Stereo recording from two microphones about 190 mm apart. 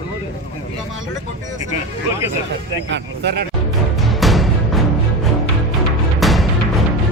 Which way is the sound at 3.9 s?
Centre (ahead or behind).